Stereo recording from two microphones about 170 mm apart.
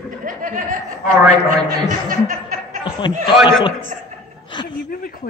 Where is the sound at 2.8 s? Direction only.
30° left (ahead or behind).